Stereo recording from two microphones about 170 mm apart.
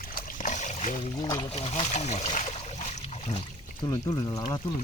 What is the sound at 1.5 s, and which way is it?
Boat, 35° left (ahead or behind).